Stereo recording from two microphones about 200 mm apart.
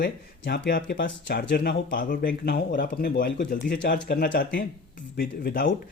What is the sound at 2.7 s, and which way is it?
Speech, 45° left (ahead or behind).